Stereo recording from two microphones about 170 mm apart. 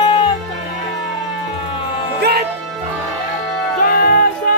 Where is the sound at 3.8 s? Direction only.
60° left (ahead or behind).